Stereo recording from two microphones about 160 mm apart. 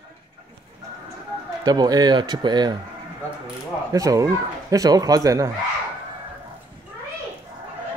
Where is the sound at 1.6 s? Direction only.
25° right (ahead or behind).